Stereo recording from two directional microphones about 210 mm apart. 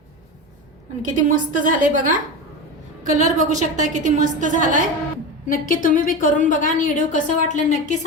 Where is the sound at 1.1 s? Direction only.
40° right (ahead or behind).